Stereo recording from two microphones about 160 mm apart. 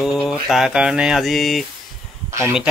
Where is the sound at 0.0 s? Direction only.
Centre (ahead or behind).